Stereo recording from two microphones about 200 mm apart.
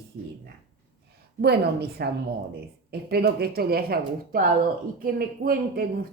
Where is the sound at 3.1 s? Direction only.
50° right (ahead or behind).